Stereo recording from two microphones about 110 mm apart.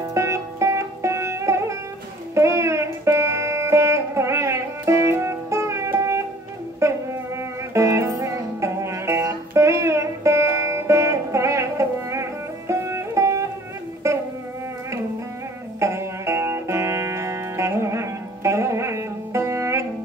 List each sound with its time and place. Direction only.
0.1 s music: 25° right (ahead or behind)
15.8 s music: 25° right (ahead or behind)